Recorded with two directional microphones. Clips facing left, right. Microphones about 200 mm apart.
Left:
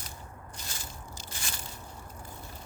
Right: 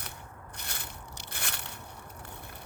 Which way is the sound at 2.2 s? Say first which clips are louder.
Left 1 dB; 65° right (ahead or behind).